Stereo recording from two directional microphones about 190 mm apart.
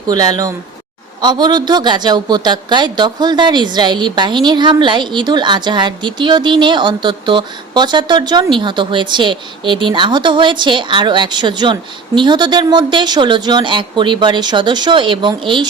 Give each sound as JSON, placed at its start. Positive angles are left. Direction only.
{"t": 0.1, "sound": "speech", "side_deg": -20}